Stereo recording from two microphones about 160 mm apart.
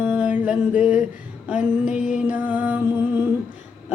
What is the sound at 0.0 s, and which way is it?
Music, 10° right (ahead or behind).